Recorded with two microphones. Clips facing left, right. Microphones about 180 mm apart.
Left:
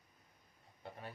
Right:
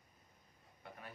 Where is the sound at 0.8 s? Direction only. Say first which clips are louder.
Left 4 dB; 30° left (ahead or behind).